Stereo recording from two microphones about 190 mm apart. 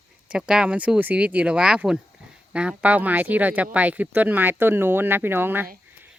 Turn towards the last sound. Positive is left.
turn(degrees=-10)  # may be behind; listen again after turning